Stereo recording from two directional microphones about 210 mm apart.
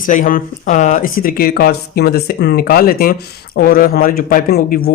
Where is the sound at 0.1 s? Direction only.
40° left (ahead or behind).